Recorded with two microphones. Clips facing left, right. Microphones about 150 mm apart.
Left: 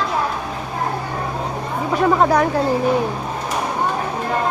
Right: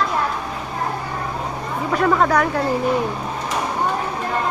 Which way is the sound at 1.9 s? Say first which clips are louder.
Left 2 dB; 20° left (ahead or behind).